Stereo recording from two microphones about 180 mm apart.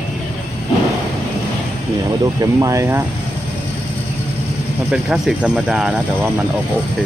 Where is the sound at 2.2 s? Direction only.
20° right (ahead or behind).